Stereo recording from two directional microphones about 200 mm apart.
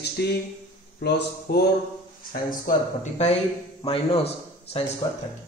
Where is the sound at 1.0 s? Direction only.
55° left (ahead or behind).